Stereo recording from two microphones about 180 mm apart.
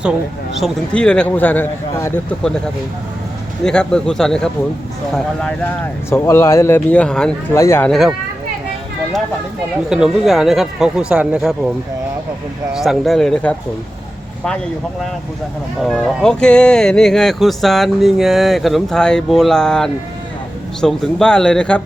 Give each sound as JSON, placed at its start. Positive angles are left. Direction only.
{"t": 0.6, "sound": "speech", "side_deg": 5}
{"t": 3.6, "sound": "speech", "side_deg": 5}
{"t": 6.1, "sound": "speech", "side_deg": 15}
{"t": 7.5, "sound": "speech", "side_deg": 15}
{"t": 7.9, "sound": "speech", "side_deg": 0}
{"t": 9.9, "sound": "speech", "side_deg": -5}
{"t": 12.7, "sound": "speech", "side_deg": 0}
{"t": 15.8, "sound": "speech", "side_deg": 5}